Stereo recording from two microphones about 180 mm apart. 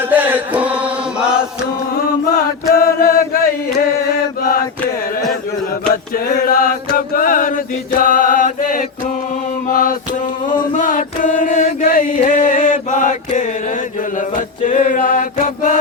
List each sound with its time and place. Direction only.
0.0 s chant: 10° right (ahead or behind)
2.7 s chant: 55° left (ahead or behind)
5.9 s chant: 50° left (ahead or behind)
9.6 s mantra: 50° left (ahead or behind)
10.8 s chant: 45° left (ahead or behind)
14.2 s mantra: 45° left (ahead or behind)